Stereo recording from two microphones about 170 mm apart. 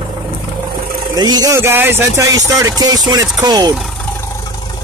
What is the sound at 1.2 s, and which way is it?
Speech, 25° right (ahead or behind).